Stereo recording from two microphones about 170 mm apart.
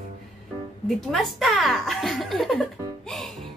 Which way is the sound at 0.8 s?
Centre (ahead or behind).